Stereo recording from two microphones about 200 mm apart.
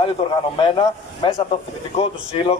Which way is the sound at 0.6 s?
25° left (ahead or behind).